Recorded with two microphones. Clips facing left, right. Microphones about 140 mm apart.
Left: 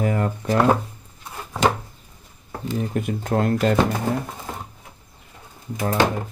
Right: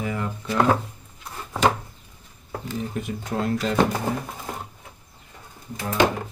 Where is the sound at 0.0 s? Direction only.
50° left (ahead or behind).